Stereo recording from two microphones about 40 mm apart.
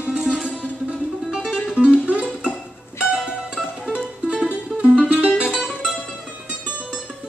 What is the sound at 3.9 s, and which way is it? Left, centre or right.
Music, centre.